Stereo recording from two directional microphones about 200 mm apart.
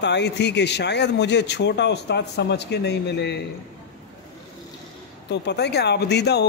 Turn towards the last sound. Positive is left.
turn(degrees=55)  # may be behind; listen again after turning